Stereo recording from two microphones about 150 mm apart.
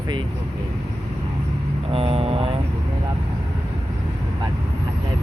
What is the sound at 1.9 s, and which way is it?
Vehicle, 40° right (ahead or behind).